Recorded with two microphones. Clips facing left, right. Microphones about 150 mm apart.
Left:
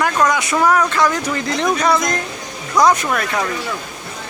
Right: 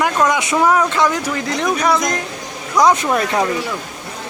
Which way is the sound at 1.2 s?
5° right (ahead or behind).